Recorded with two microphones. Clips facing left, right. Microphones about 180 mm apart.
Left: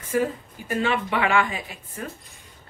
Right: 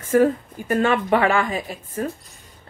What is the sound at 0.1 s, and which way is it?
A woman's voice, 50° right (ahead or behind).